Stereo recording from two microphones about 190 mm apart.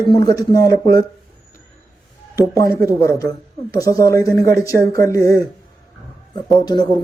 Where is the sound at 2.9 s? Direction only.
15° left (ahead or behind).